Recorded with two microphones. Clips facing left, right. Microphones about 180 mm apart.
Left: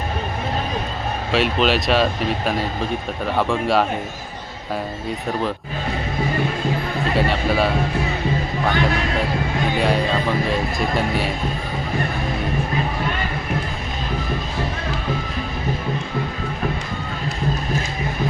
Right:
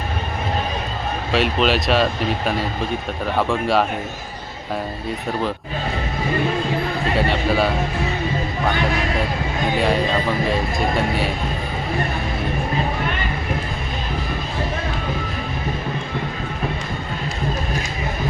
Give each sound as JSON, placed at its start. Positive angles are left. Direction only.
{"t": 1.3, "sound": "speech", "side_deg": 0}
{"t": 7.2, "sound": "speech", "side_deg": 0}
{"t": 9.7, "sound": "speech", "side_deg": 0}